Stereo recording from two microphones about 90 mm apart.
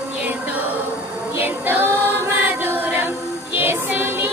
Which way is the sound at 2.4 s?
25° right (ahead or behind).